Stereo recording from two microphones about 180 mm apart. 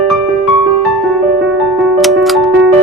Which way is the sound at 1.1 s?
Centre (ahead or behind).